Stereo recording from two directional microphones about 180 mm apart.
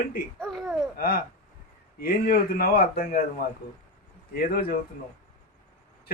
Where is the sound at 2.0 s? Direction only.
55° left (ahead or behind).